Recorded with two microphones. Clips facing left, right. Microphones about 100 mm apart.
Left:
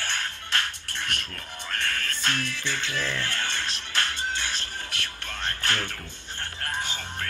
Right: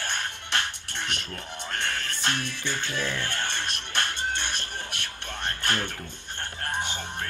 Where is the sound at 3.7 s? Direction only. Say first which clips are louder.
Even; 60° right (ahead or behind).